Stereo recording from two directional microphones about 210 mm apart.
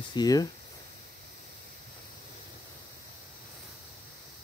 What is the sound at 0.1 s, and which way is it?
Speech, 20° left (ahead or behind).